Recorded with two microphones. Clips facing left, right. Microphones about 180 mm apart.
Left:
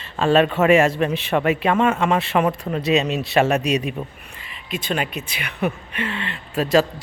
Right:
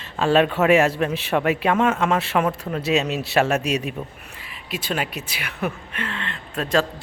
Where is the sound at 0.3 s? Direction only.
10° right (ahead or behind).